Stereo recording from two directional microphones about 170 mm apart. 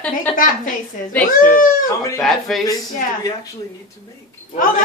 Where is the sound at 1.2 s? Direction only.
55° left (ahead or behind).